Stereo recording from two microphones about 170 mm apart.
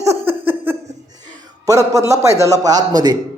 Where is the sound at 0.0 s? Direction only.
15° right (ahead or behind).